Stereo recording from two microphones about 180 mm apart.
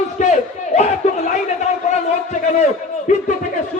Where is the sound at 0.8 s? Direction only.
45° left (ahead or behind).